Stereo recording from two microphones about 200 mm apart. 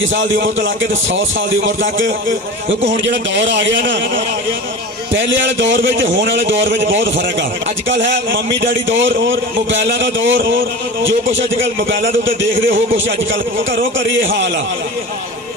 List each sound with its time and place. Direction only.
0.0 s a man's voice: 70° right (ahead or behind)
1.6 s a man's voice: 70° right (ahead or behind)
14.3 s a man's voice: 60° right (ahead or behind)